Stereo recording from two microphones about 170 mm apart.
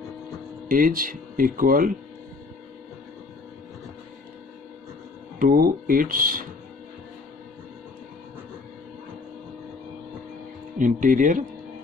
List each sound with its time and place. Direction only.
0.7 s speech: 55° right (ahead or behind)
5.4 s speech: 55° right (ahead or behind)
10.8 s speech: 50° right (ahead or behind)